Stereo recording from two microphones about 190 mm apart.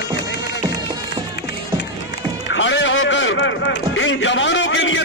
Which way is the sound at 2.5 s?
75° left (ahead or behind).